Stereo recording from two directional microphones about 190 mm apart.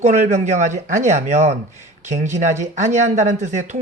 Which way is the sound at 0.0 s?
40° right (ahead or behind).